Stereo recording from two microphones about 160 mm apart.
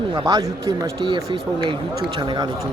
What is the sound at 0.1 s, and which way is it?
Speech, 25° right (ahead or behind).